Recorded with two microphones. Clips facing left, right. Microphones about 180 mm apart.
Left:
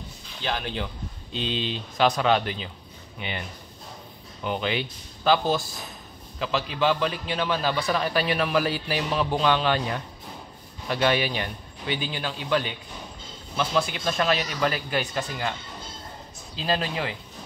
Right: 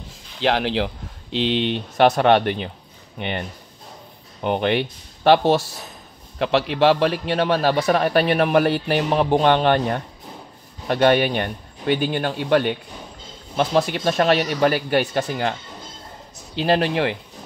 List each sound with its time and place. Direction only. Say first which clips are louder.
0.4 s a man's voice: right 9 dB; 85° right; by 15.5 s 55° right (ahead or behind)
16.5 s speech: right 8 dB; 65° right (ahead or behind)